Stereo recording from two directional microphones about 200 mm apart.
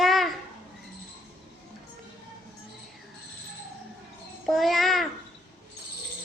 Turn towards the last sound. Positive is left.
turn(degrees=0)  # may be behind; listen again after turning